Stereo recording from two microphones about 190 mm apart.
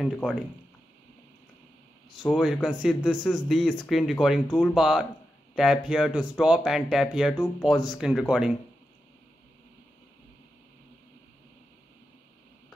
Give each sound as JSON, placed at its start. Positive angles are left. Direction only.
{"t": 0.0, "sound": "speech", "side_deg": 5}
{"t": 2.3, "sound": "speech", "side_deg": 0}